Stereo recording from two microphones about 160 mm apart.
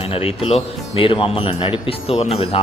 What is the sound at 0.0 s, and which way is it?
Speech, 40° left (ahead or behind).